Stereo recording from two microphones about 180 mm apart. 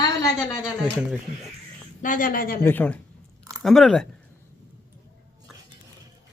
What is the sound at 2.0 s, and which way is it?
Speech, 50° left (ahead or behind).